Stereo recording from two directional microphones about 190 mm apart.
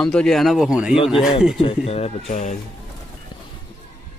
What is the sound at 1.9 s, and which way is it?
Speech, 30° left (ahead or behind).